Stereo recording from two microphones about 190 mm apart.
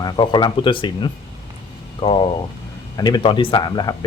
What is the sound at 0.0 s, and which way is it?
Speech, 25° left (ahead or behind).